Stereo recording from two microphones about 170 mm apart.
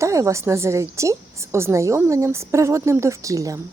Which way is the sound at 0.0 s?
20° right (ahead or behind).